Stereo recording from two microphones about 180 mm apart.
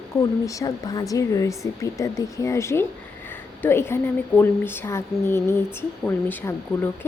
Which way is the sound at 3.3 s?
10° left (ahead or behind).